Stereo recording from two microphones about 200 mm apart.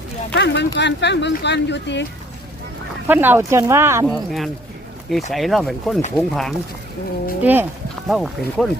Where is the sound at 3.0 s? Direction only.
10° right (ahead or behind).